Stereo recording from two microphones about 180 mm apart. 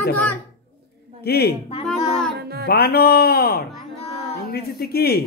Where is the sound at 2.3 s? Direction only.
60° right (ahead or behind).